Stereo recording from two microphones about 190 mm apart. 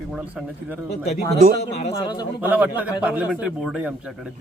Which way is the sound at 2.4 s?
10° right (ahead or behind).